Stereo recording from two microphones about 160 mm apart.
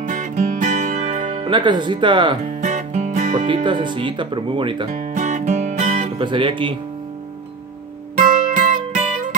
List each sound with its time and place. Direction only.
0.0 s music: 55° right (ahead or behind)
1.4 s speech: 30° right (ahead or behind)
2.4 s music: 50° right (ahead or behind)
3.4 s speech: 30° right (ahead or behind)
4.9 s music: 50° right (ahead or behind)
6.1 s speech: 30° right (ahead or behind)
8.3 s music: 55° right (ahead or behind)